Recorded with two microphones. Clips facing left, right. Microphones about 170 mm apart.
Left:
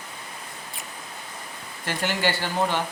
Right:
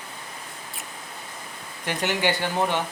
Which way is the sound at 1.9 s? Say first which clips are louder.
Right 1 dB; 20° right (ahead or behind).